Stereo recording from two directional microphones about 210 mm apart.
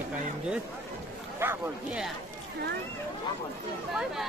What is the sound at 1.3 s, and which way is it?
Speech, 5° right (ahead or behind).